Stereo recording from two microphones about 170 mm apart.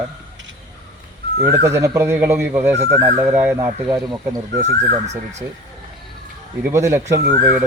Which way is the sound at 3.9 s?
20° right (ahead or behind).